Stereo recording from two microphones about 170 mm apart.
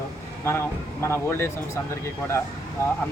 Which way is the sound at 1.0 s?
15° left (ahead or behind).